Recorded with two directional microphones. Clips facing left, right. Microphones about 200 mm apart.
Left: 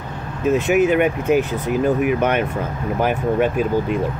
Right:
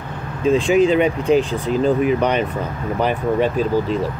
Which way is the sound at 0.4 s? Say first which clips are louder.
Right 1 dB; 5° left (ahead or behind).